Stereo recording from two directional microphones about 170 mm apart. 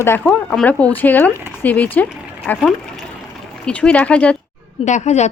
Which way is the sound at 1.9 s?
10° left (ahead or behind).